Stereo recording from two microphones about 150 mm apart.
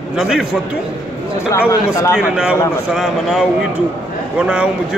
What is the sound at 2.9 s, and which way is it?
A man's voice, 5° right (ahead or behind).